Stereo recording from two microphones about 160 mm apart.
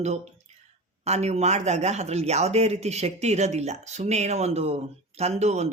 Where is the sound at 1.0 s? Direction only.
40° right (ahead or behind).